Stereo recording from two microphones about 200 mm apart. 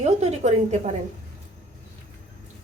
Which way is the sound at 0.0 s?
35° right (ahead or behind).